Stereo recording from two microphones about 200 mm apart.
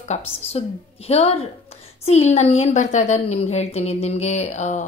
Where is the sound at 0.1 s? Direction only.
30° left (ahead or behind).